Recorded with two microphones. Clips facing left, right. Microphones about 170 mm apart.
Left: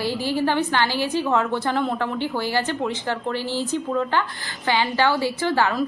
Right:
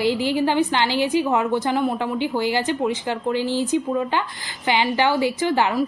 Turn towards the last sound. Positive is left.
turn(degrees=-15)  # may be behind; listen again after turning